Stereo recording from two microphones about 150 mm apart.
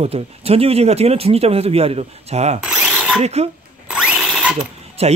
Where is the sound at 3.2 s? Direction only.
45° right (ahead or behind).